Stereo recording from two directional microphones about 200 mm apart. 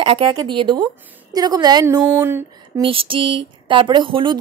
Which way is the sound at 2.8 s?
25° right (ahead or behind).